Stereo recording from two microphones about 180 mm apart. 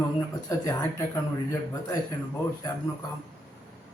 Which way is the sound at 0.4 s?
15° left (ahead or behind).